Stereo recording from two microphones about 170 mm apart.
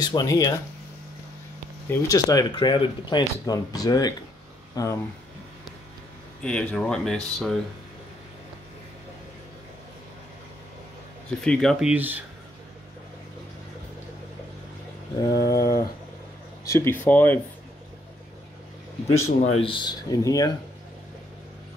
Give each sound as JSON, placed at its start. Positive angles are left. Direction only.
{"t": 0.0, "sound": "speech", "side_deg": 25}
{"t": 1.9, "sound": "speech", "side_deg": 20}
{"t": 6.4, "sound": "speech", "side_deg": 5}
{"t": 11.4, "sound": "speech", "side_deg": 5}
{"t": 11.9, "sound": "speech", "side_deg": -10}
{"t": 15.2, "sound": "speech", "side_deg": 20}
{"t": 19.2, "sound": "speech", "side_deg": 35}